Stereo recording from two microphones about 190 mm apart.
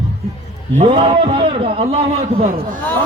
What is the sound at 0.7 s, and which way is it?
Music, 30° right (ahead or behind).